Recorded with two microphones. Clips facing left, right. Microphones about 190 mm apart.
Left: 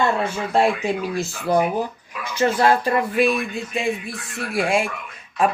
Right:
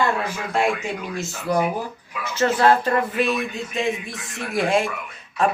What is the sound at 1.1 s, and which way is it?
Speech, 35° left (ahead or behind).